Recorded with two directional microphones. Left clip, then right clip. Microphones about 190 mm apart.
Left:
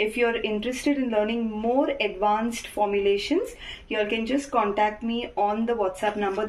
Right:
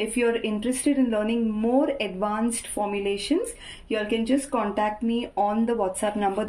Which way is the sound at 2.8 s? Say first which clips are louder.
Left 4 dB; 25° right (ahead or behind).